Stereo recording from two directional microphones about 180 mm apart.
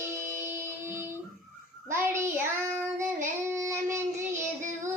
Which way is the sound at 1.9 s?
15° right (ahead or behind).